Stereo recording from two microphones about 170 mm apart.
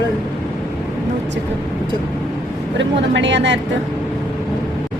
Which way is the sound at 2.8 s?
90° right.